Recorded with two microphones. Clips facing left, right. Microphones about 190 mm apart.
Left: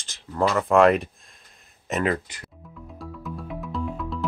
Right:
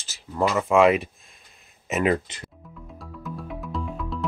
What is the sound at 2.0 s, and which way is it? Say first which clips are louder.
Speech: right 3 dB; 20° right (ahead or behind).